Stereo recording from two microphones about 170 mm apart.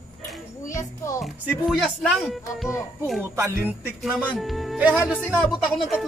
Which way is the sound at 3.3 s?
15° right (ahead or behind).